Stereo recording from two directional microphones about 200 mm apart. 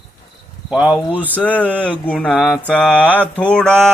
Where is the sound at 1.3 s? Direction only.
5° left (ahead or behind).